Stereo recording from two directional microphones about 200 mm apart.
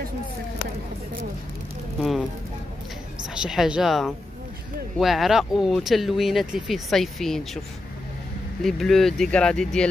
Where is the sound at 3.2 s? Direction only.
5° right (ahead or behind).